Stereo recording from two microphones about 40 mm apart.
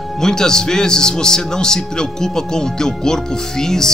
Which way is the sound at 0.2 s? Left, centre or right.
Centre.